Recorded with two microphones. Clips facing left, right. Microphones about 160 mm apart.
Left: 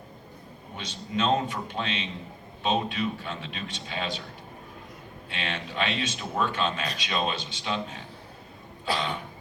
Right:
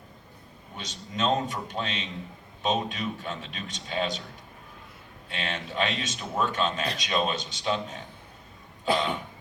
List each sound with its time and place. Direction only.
0.8 s speech: 40° right (ahead or behind)
5.3 s speech: 40° right (ahead or behind)